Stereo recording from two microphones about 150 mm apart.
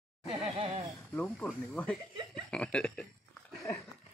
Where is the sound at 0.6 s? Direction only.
40° right (ahead or behind).